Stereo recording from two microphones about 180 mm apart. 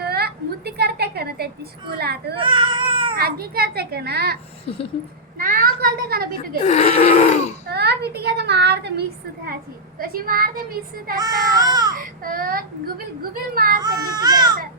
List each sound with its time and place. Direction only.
0.0 s a sound: 60° right (ahead or behind)
1.9 s a child's voice: 65° right (ahead or behind)
2.4 s baby cry: 25° right (ahead or behind)
3.2 s a child's voice: 60° right (ahead or behind)
5.4 s a child's voice: 50° right (ahead or behind)
6.6 s a sound: 40° left (ahead or behind)
7.7 s speech: 65° right (ahead or behind)
10.0 s a child's voice: 55° right (ahead or behind)
11.2 s speech: 20° right (ahead or behind)
11.9 s a child's voice: 50° right (ahead or behind)
13.8 s speech: 20° right (ahead or behind)